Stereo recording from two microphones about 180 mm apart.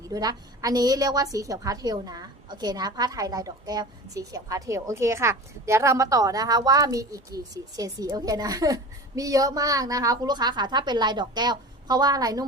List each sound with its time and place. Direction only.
0.0 s a woman's voice: 20° right (ahead or behind)